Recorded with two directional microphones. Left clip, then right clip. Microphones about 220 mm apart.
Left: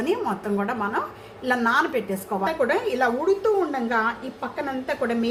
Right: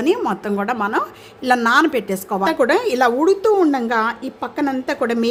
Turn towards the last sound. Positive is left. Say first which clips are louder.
# right 5 dB
turn(degrees=-55)  # may be behind; listen again after turning